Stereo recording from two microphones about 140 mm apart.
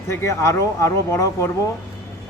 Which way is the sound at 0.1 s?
20° left (ahead or behind).